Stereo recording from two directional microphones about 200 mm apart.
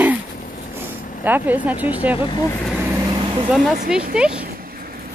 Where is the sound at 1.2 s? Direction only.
10° right (ahead or behind).